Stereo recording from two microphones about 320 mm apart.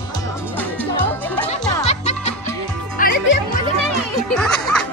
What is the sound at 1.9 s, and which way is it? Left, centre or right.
Music, left.